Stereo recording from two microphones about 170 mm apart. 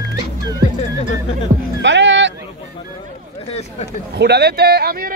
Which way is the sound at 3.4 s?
40° left (ahead or behind).